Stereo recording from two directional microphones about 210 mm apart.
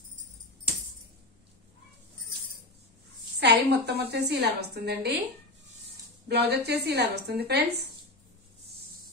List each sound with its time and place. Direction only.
3.3 s a woman's voice: 50° right (ahead or behind)
6.2 s a woman's voice: 50° right (ahead or behind)